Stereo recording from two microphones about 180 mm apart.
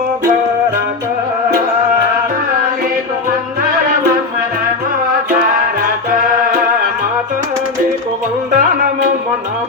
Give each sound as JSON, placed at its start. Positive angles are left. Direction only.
{"t": 8.5, "sound": "music", "side_deg": -50}